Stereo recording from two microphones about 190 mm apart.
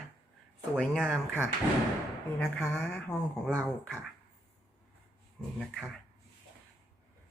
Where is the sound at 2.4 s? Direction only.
5° left (ahead or behind).